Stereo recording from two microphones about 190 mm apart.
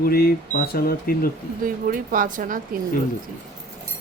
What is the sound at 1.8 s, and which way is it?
Speech, 45° right (ahead or behind).